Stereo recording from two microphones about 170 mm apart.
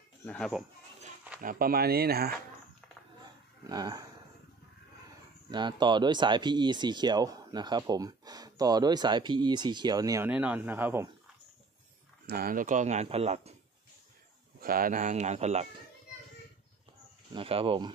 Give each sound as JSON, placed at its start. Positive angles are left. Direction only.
{"t": 0.2, "sound": "speech", "side_deg": 10}
{"t": 1.4, "sound": "speech", "side_deg": -55}
{"t": 3.6, "sound": "speech", "side_deg": -20}
{"t": 5.5, "sound": "speech", "side_deg": -25}
{"t": 10.2, "sound": "speech", "side_deg": -10}
{"t": 12.3, "sound": "speech", "side_deg": -60}
{"t": 14.6, "sound": "speech", "side_deg": -55}
{"t": 17.3, "sound": "speech", "side_deg": -35}